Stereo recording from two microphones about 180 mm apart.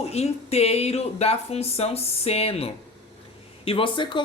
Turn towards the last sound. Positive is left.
turn(degrees=25)  # may be behind; listen again after turning